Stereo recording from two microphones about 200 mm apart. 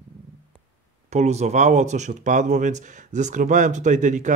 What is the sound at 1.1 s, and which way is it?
Speech, 35° right (ahead or behind).